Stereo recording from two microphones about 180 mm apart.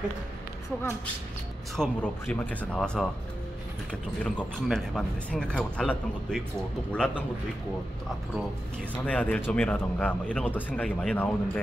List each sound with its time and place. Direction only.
1.8 s speech: 10° left (ahead or behind)
4.6 s speech: 5° left (ahead or behind)
9.0 s speech: 10° left (ahead or behind)